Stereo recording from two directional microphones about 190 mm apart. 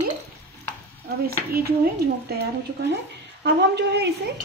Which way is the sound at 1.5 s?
55° right (ahead or behind).